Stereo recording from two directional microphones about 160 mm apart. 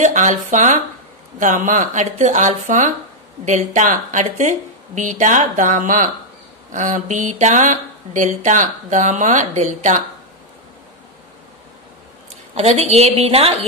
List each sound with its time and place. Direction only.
0.0 s speech: 50° right (ahead or behind)
12.5 s a woman's voice: 40° right (ahead or behind)